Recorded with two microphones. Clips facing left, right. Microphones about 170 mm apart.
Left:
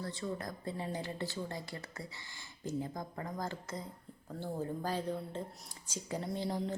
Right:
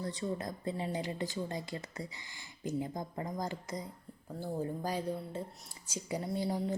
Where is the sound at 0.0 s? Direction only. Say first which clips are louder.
Right 3 dB; 20° right (ahead or behind).